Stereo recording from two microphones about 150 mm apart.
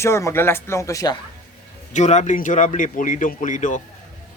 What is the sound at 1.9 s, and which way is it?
Speech, 50° left (ahead or behind).